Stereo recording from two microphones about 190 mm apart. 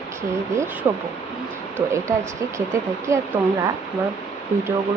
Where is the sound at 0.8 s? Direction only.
15° right (ahead or behind).